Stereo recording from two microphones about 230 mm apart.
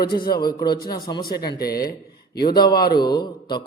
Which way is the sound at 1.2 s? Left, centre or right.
Left.